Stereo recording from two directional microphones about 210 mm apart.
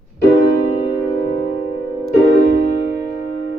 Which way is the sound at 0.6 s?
30° left (ahead or behind).